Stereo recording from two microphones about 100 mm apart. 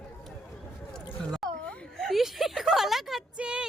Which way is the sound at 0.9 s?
5° left (ahead or behind).